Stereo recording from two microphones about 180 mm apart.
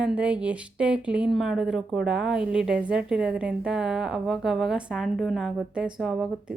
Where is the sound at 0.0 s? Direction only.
5° right (ahead or behind).